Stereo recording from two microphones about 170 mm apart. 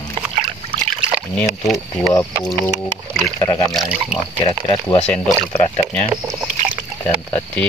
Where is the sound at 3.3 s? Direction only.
25° left (ahead or behind).